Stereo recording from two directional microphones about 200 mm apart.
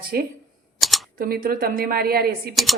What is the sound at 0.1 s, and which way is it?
Speech, 50° right (ahead or behind).